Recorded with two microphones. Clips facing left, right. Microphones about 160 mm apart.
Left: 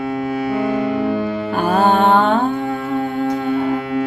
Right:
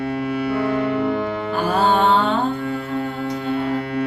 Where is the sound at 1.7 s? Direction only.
55° left (ahead or behind).